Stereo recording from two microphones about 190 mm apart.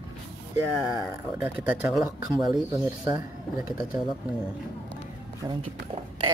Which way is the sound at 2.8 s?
20° right (ahead or behind).